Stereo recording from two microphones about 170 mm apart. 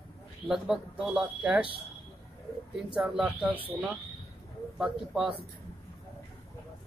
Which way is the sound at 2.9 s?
5° right (ahead or behind).